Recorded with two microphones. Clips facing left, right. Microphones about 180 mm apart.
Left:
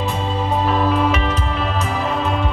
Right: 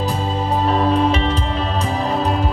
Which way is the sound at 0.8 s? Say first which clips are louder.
Right 1 dB; 30° right (ahead or behind).